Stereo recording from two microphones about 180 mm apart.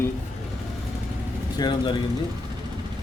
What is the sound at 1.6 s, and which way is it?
Speech, 25° left (ahead or behind).